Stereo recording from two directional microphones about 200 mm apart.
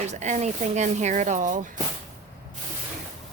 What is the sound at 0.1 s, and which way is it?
Speech, 35° right (ahead or behind).